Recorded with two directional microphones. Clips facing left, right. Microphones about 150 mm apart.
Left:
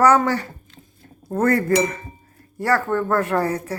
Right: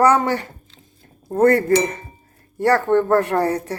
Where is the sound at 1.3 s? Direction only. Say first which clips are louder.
Right 3 dB; 30° right (ahead or behind).